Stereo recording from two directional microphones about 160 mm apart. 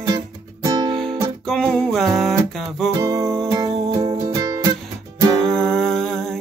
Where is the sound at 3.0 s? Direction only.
20° right (ahead or behind).